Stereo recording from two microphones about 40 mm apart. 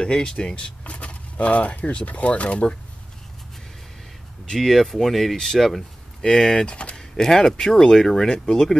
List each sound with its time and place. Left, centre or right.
0.0 s speech: centre
4.6 s speech: centre
6.4 s speech: left
7.0 s speech: centre